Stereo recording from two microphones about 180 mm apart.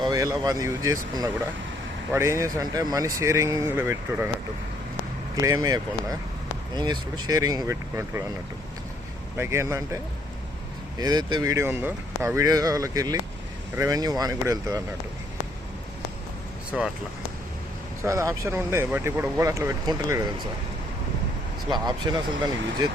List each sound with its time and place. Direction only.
0.0 s speech: 20° right (ahead or behind)
2.1 s speech: 15° right (ahead or behind)
5.4 s speech: 20° right (ahead or behind)
9.4 s speech: 15° right (ahead or behind)
16.7 s speech: 5° right (ahead or behind)
18.0 s speech: 15° right (ahead or behind)
21.7 s speech: 25° right (ahead or behind)